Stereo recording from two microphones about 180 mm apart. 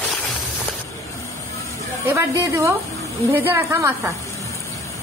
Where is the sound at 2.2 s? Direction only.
15° right (ahead or behind).